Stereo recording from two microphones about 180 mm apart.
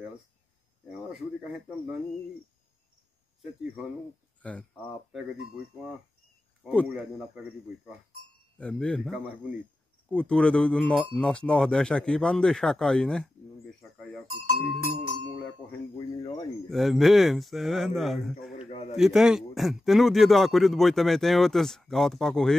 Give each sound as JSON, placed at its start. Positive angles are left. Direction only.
{"t": 1.1, "sound": "speech", "side_deg": -5}
{"t": 4.4, "sound": "speech", "side_deg": 5}
{"t": 6.6, "sound": "speech", "side_deg": 0}
{"t": 16.6, "sound": "speech", "side_deg": 0}
{"t": 18.7, "sound": "a man's voice", "side_deg": 30}
{"t": 18.9, "sound": "speech", "side_deg": 0}